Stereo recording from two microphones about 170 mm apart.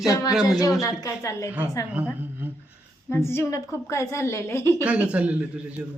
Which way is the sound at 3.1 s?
15° left (ahead or behind).